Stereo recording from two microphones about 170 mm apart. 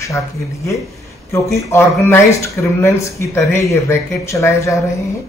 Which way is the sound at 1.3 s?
15° left (ahead or behind).